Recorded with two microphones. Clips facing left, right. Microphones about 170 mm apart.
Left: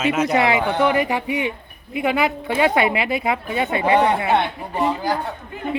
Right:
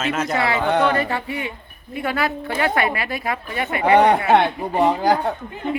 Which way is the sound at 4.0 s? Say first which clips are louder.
Right 6 dB; 55° right (ahead or behind).